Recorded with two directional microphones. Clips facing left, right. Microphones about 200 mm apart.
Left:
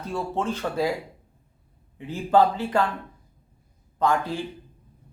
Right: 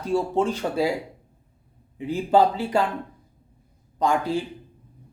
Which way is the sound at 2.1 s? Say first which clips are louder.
Right 1 dB; 10° right (ahead or behind).